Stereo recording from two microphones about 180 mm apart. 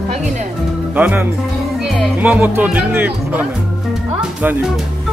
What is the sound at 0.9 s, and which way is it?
Speech, 10° right (ahead or behind).